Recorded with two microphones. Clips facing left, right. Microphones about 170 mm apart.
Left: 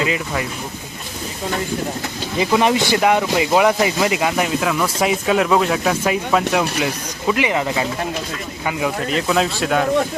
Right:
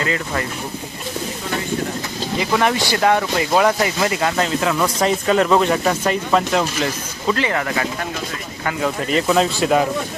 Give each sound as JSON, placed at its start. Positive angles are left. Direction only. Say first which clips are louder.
{"t": 0.0, "sound": "speech", "louder": "left 1 dB", "side_deg": 15}
{"t": 2.4, "sound": "speech", "louder": "left 3 dB", "side_deg": 20}
{"t": 4.6, "sound": "speech", "louder": "right 1 dB", "side_deg": 0}
{"t": 9.0, "sound": "speech", "louder": "right 3 dB", "side_deg": 0}